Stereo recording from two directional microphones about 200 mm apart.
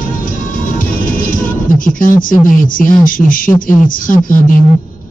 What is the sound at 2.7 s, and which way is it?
A man's voice, 45° left (ahead or behind).